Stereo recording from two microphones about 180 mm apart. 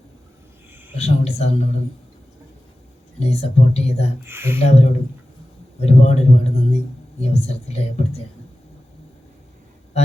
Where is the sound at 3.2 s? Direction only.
35° left (ahead or behind).